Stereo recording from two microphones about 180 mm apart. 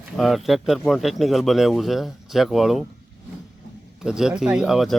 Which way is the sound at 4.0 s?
5° right (ahead or behind).